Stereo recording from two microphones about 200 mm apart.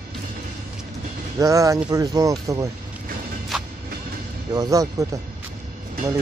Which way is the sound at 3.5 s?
Centre (ahead or behind).